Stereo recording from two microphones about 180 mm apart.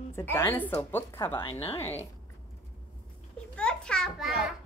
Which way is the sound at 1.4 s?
30° left (ahead or behind).